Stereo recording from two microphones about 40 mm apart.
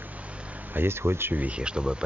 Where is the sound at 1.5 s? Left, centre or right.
Right.